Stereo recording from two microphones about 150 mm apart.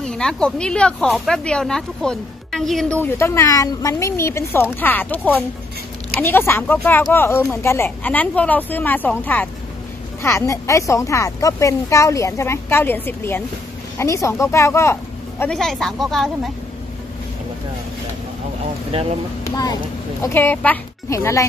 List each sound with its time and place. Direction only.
0.0 s speech: 5° left (ahead or behind)
3.0 s speech: 15° left (ahead or behind)
15.5 s speech: 5° left (ahead or behind)
19.4 s speech: 25° left (ahead or behind)
20.2 s speech: 15° left (ahead or behind)